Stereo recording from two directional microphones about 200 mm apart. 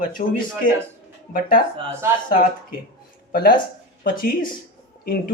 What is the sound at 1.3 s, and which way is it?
Speech, 45° left (ahead or behind).